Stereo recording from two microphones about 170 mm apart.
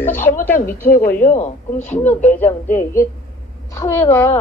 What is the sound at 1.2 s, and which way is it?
Speech, 45° left (ahead or behind).